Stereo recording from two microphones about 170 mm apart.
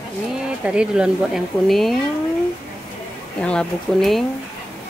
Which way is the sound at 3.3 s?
5° left (ahead or behind).